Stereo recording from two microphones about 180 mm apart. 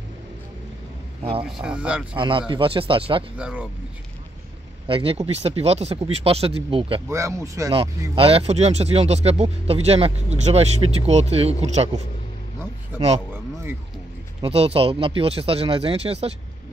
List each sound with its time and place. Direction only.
1.4 s speech: 5° right (ahead or behind)
2.1 s speech: 30° right (ahead or behind)
3.3 s speech: 5° right (ahead or behind)
4.8 s speech: 30° right (ahead or behind)
7.1 s speech: 15° right (ahead or behind)
8.2 s speech: 30° right (ahead or behind)
13.3 s a sound: 15° right (ahead or behind)
14.4 s speech: 35° right (ahead or behind)